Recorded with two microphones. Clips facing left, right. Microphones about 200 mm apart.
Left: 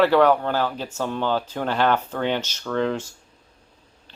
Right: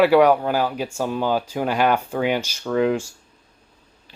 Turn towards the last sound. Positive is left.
turn(degrees=-10)  # may be behind; listen again after turning